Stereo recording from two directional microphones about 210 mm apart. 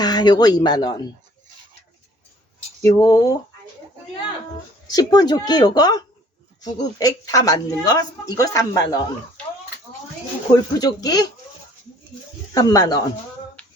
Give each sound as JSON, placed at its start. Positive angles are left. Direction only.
{"t": 0.0, "sound": "speech", "side_deg": 20}
{"t": 2.8, "sound": "speech", "side_deg": 15}
{"t": 4.9, "sound": "speech", "side_deg": 20}
{"t": 10.5, "sound": "speech", "side_deg": 20}
{"t": 12.5, "sound": "speech", "side_deg": 15}